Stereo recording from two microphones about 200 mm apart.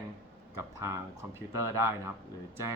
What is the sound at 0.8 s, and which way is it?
Speech, 15° right (ahead or behind).